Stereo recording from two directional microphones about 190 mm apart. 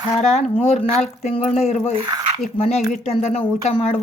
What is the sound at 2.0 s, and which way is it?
Speech, 20° right (ahead or behind).